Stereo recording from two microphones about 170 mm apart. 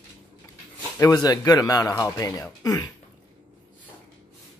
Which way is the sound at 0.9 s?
20° left (ahead or behind).